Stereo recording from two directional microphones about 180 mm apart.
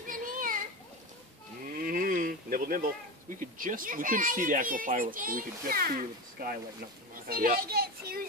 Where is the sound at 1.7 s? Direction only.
50° right (ahead or behind).